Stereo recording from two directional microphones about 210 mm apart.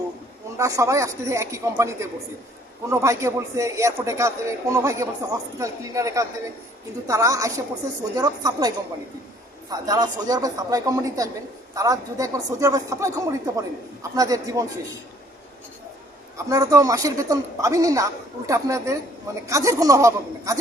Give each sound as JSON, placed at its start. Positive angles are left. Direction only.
{"t": 0.5, "sound": "speech", "side_deg": -15}
{"t": 16.5, "sound": "speech", "side_deg": -15}